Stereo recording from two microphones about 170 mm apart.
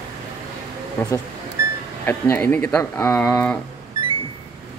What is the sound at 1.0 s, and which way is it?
Speech, 10° left (ahead or behind).